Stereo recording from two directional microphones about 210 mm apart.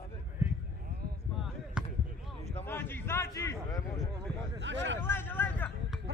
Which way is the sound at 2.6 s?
10° left (ahead or behind).